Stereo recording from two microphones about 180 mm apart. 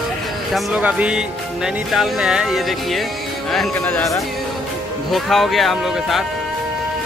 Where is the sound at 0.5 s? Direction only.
5° right (ahead or behind).